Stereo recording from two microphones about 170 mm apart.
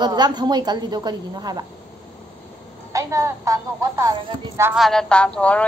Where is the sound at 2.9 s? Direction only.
20° right (ahead or behind).